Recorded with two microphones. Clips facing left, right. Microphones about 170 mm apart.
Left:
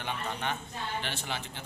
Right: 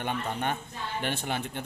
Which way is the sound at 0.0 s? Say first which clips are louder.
Right 4 dB; 50° right (ahead or behind).